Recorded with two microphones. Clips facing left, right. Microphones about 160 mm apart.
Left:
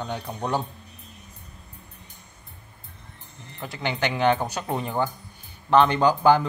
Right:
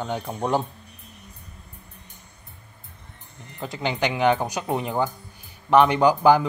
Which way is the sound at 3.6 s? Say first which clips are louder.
Right 2 dB; 20° right (ahead or behind).